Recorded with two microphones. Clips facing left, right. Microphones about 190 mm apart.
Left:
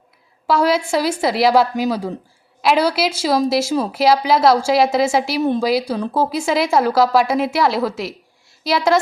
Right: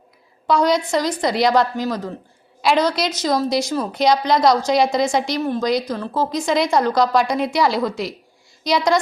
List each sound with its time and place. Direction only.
0.4 s a woman's voice: 5° left (ahead or behind)
5.4 s a woman's voice: 20° left (ahead or behind)
5.6 s a woman's voice: 10° left (ahead or behind)